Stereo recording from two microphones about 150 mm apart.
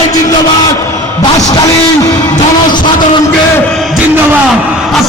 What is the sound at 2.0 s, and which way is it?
Music, 25° left (ahead or behind).